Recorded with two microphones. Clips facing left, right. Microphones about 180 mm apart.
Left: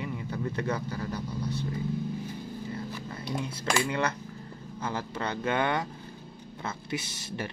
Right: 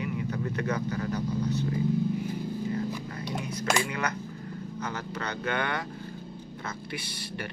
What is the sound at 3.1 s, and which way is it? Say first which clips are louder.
Speech: even; 30° left (ahead or behind).